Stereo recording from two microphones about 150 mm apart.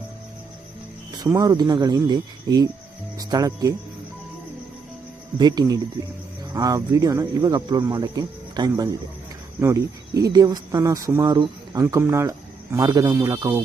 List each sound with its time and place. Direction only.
1.2 s speech: 25° right (ahead or behind)
5.4 s speech: 25° right (ahead or behind)